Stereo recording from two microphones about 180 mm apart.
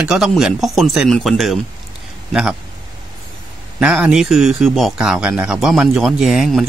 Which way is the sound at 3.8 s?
5° right (ahead or behind).